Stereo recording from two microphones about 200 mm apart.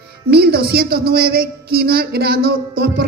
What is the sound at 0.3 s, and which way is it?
Speech, 50° right (ahead or behind).